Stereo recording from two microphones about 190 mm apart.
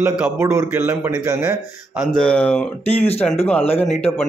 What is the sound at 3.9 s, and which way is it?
Speech, 30° left (ahead or behind).